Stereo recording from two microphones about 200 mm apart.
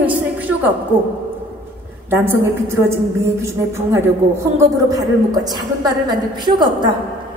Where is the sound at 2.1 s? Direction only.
10° right (ahead or behind).